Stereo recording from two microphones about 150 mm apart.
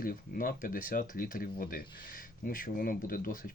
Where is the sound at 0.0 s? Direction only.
75° left (ahead or behind).